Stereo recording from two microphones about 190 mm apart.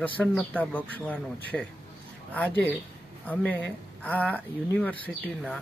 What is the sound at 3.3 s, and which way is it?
Speech, 5° left (ahead or behind).